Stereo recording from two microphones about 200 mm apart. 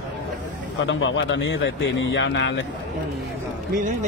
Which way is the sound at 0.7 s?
70° left (ahead or behind).